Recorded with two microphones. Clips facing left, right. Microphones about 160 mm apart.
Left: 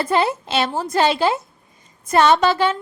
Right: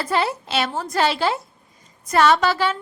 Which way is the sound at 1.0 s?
20° left (ahead or behind).